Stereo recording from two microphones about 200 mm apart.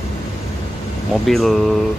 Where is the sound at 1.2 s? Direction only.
Centre (ahead or behind).